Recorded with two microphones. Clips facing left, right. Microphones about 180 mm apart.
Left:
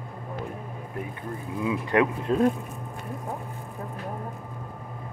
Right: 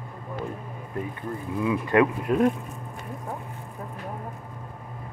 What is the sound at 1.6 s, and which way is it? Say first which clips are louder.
Speech: right 2 dB; 20° left (ahead or behind).